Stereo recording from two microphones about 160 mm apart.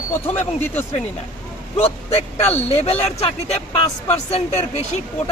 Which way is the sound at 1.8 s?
40° left (ahead or behind).